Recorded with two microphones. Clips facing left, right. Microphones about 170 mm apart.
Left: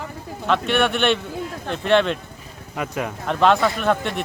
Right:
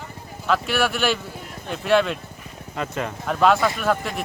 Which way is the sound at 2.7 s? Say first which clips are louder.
Left 1 dB; 10° left (ahead or behind).